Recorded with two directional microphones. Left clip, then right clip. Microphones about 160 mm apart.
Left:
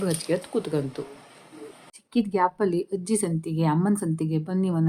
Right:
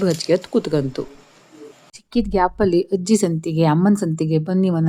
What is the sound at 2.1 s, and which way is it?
A woman's voice, 45° right (ahead or behind).